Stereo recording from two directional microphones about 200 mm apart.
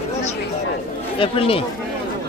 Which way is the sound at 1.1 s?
30° left (ahead or behind).